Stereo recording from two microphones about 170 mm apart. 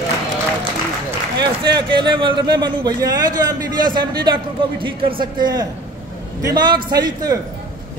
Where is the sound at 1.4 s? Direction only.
25° right (ahead or behind).